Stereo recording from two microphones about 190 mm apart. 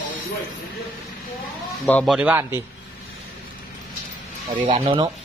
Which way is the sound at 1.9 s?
5° left (ahead or behind).